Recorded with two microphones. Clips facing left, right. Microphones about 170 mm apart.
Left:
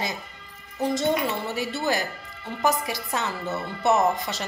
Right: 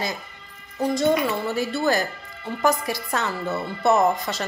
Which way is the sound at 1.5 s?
15° left (ahead or behind).